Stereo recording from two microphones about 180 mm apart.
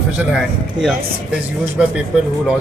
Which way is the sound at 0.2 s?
5° right (ahead or behind).